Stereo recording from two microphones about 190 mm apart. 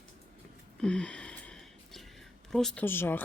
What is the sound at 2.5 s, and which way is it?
Speech, centre (ahead or behind).